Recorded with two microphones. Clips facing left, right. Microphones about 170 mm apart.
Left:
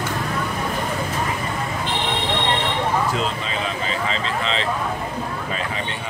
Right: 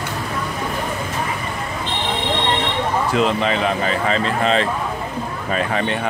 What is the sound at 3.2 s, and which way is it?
Speech, 65° right (ahead or behind).